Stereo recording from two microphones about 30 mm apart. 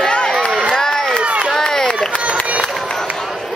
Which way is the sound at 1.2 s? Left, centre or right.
Right.